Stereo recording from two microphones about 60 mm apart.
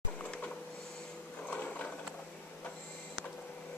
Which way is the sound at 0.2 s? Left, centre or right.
Left.